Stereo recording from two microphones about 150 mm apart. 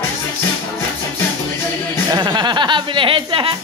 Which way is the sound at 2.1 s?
25° right (ahead or behind).